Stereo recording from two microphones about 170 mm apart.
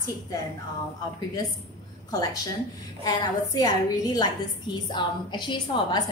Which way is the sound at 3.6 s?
25° left (ahead or behind).